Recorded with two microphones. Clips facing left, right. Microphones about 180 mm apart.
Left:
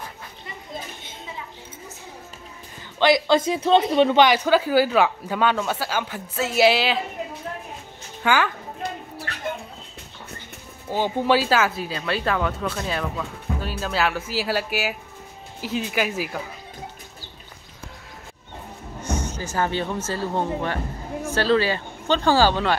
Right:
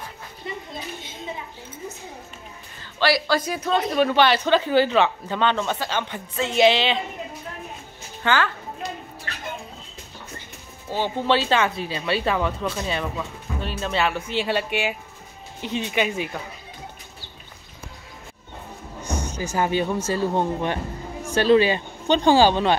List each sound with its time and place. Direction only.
2.8 s speech: 20° left (ahead or behind)
8.2 s a woman's voice: 10° left (ahead or behind)
10.9 s speech: 15° left (ahead or behind)
19.0 s speech: 10° right (ahead or behind)